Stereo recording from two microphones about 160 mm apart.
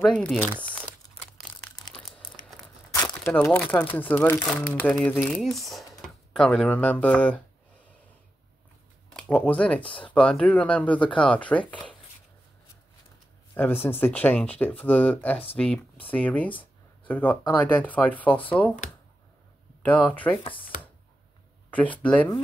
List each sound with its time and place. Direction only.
0.1 s speech: 5° left (ahead or behind)
1.9 s crumpling: 5° left (ahead or behind)
2.9 s crumpling: 20° left (ahead or behind)
3.3 s speech: 10° left (ahead or behind)
9.1 s speech: 10° left (ahead or behind)
13.8 s speech: 15° left (ahead or behind)
19.8 s speech: 10° left (ahead or behind)
21.6 s speech: 10° left (ahead or behind)